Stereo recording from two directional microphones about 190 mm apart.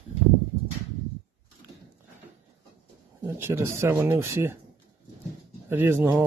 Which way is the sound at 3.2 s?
10° right (ahead or behind).